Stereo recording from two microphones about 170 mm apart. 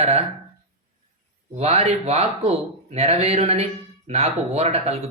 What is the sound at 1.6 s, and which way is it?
Speech, 40° right (ahead or behind).